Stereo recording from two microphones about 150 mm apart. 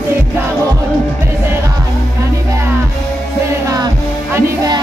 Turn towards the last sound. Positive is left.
turn(degrees=-25)  # may be behind; listen again after turning